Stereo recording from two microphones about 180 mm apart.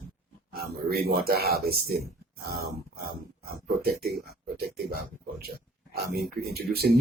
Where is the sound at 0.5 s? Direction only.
60° right (ahead or behind).